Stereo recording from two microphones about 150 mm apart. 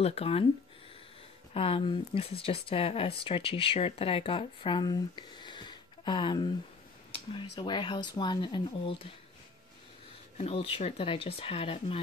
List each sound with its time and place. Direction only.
0.0 s speech: 40° left (ahead or behind)
1.5 s speech: 40° left (ahead or behind)
10.3 s speech: 40° left (ahead or behind)